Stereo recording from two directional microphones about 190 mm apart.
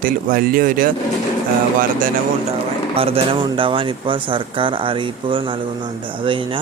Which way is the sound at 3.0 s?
30° right (ahead or behind).